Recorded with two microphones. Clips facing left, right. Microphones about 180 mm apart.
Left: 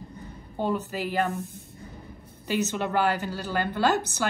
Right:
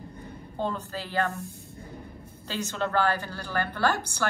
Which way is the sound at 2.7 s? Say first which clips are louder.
Right 3 dB; 15° left (ahead or behind).